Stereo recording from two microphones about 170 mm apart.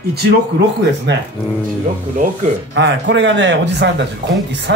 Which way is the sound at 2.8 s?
90° right.